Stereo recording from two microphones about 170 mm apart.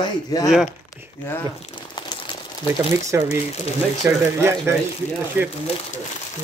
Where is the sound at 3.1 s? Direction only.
15° right (ahead or behind).